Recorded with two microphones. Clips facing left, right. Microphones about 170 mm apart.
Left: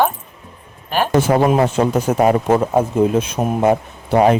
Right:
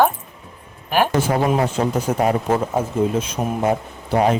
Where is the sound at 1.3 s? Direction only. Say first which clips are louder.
Left 4 dB; 75° left (ahead or behind).